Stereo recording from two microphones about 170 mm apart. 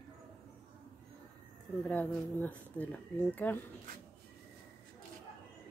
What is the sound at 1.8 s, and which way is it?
Speech, 10° left (ahead or behind).